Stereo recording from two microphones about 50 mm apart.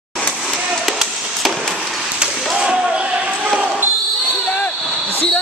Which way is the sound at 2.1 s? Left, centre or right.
Centre.